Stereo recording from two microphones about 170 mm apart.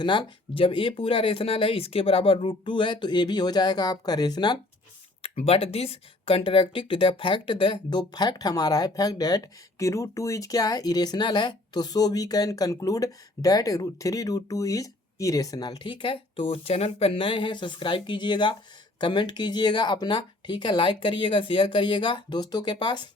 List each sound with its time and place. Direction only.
0.0 s speech: 30° left (ahead or behind)
5.2 s speech: 35° left (ahead or behind)